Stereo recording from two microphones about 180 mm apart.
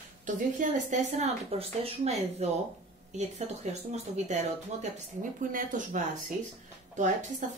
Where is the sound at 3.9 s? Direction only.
40° right (ahead or behind).